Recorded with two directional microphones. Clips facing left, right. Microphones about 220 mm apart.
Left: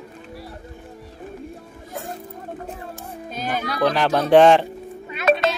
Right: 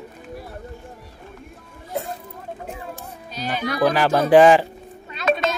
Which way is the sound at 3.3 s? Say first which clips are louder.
Left 1 dB; 50° left (ahead or behind).